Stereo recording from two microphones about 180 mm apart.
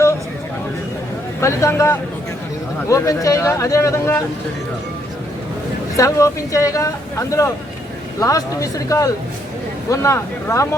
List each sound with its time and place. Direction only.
1.4 s speech: 15° left (ahead or behind)
6.0 s speech: 20° left (ahead or behind)